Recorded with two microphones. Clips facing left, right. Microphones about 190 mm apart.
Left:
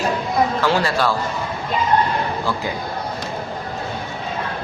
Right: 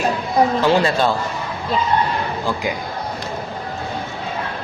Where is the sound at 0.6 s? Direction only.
20° right (ahead or behind).